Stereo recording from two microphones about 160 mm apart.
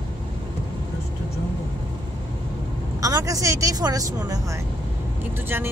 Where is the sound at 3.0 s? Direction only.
20° right (ahead or behind).